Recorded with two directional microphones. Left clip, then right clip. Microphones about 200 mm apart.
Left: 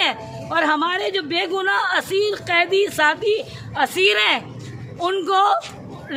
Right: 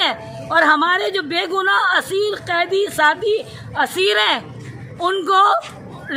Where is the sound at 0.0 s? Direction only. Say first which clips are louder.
Right 2 dB; 15° right (ahead or behind).